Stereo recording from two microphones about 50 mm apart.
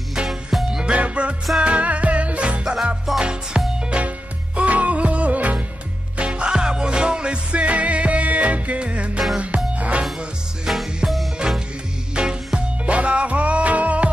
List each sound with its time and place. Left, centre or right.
0.1 s music: centre
0.9 s music: right
2.6 s music: centre
4.6 s music: right
10.7 s music: centre; by 14.1 s right